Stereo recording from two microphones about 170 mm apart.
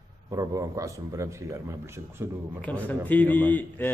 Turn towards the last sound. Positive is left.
turn(degrees=10)  # may be behind; listen again after turning